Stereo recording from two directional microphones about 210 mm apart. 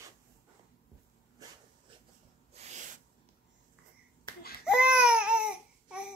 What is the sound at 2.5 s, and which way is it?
Owl, 35° right (ahead or behind).